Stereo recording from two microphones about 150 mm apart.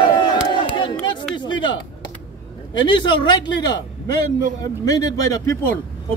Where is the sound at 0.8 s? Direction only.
30° left (ahead or behind).